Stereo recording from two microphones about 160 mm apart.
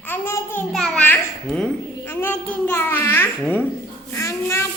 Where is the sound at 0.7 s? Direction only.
Centre (ahead or behind); by 4.7 s 15° left (ahead or behind).